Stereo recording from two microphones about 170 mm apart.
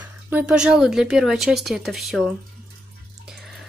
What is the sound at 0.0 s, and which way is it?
Speech, 10° right (ahead or behind).